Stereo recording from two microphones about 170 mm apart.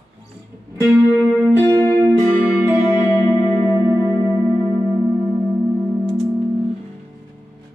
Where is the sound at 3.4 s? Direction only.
20° left (ahead or behind).